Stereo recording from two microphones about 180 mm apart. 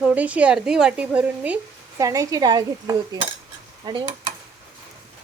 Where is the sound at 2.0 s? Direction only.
20° right (ahead or behind).